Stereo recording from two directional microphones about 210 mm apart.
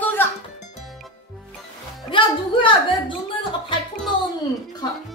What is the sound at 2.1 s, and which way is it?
Music, 25° left (ahead or behind).